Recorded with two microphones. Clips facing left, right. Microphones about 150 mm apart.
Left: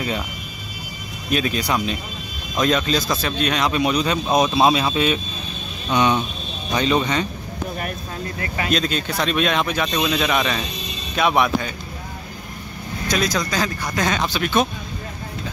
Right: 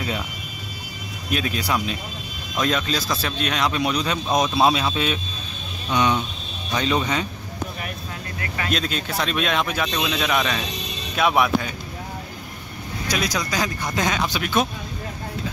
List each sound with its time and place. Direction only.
1.3 s speech: centre (ahead or behind)
5.9 s speech: 30° left (ahead or behind)
6.8 s speech: centre (ahead or behind)
8.7 s speech: centre (ahead or behind)
13.1 s speech: 10° right (ahead or behind)